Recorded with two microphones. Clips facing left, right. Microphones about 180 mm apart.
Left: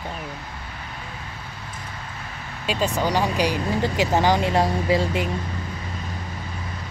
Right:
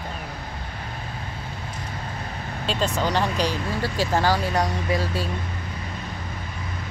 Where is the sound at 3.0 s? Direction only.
15° left (ahead or behind).